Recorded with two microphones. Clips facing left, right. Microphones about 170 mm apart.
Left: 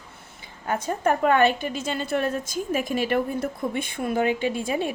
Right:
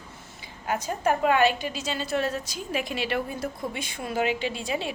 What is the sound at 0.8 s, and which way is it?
A woman's voice, 50° left (ahead or behind).